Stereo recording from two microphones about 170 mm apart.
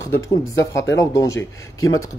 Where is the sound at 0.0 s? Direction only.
20° left (ahead or behind).